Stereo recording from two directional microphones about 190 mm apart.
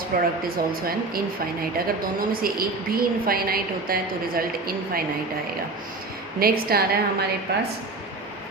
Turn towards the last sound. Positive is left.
turn(degrees=-60)  # may be behind; listen again after turning